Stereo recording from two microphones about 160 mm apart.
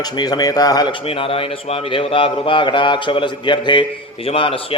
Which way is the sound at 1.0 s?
35° left (ahead or behind).